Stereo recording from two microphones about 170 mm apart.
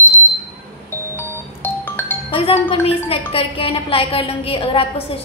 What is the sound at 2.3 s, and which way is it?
A woman's voice, 35° left (ahead or behind).